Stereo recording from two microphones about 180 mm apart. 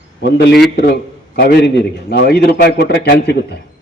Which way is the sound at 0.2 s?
70° left (ahead or behind).